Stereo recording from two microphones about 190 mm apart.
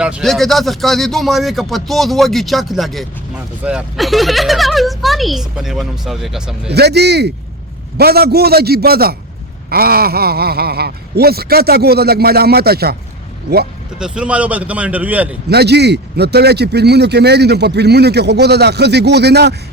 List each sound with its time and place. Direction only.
0.0 s speech: 5° right (ahead or behind)
6.7 s a man's voice: 60° right (ahead or behind)
14.0 s a man's voice: 5° right (ahead or behind)
15.4 s a man's voice: 60° right (ahead or behind)